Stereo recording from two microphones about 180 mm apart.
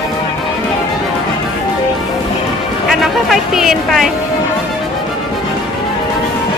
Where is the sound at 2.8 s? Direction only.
Centre (ahead or behind).